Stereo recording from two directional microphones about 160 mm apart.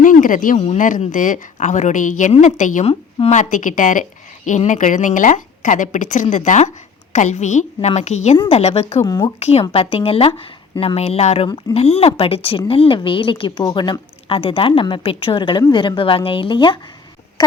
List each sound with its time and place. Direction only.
0.0 s a sound: 55° left (ahead or behind)
0.6 s a woman's voice: 45° left (ahead or behind)
9.0 s speech: 20° left (ahead or behind)
9.4 s speech: 40° left (ahead or behind)